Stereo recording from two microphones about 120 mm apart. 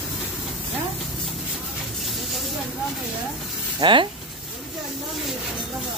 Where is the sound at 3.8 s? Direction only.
45° right (ahead or behind).